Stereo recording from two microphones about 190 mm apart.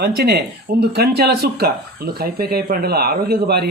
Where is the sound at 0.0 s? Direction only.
55° right (ahead or behind).